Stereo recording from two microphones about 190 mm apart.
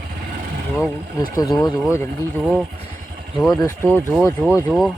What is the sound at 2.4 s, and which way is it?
Speech, 5° right (ahead or behind).